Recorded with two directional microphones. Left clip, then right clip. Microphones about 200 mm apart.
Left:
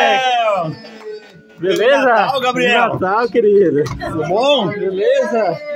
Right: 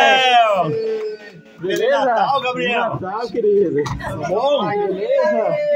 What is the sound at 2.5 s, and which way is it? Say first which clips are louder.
Speech: left 6 dB; 60° left (ahead or behind).